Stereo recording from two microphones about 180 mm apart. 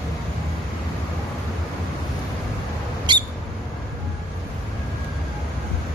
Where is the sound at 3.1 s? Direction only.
25° right (ahead or behind).